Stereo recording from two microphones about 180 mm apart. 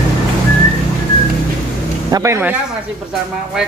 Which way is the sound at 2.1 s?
15° right (ahead or behind).